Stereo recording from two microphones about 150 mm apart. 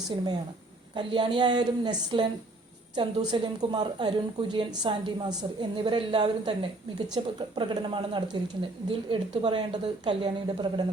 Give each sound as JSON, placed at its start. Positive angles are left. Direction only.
{"t": 0.9, "sound": "a woman's voice", "side_deg": -30}